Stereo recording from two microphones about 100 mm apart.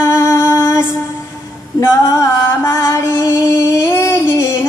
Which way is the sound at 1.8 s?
35° left (ahead or behind).